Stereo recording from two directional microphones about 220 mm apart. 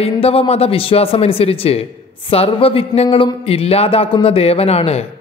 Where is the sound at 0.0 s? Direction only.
25° left (ahead or behind).